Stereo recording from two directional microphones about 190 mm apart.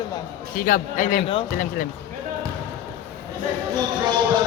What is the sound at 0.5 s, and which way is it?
Speech, 45° left (ahead or behind).